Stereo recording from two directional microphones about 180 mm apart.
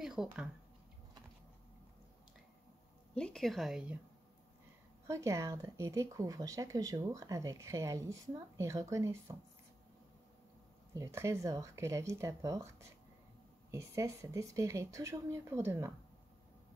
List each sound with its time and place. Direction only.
0.0 s speech: 5° right (ahead or behind)
3.2 s a woman's voice: 5° left (ahead or behind)
5.0 s speech: 15° right (ahead or behind)
11.0 s speech: 15° right (ahead or behind)